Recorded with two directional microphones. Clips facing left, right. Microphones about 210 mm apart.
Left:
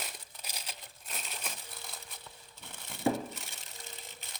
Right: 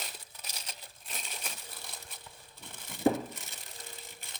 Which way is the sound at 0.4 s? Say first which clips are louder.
Left 2 dB; 10° left (ahead or behind).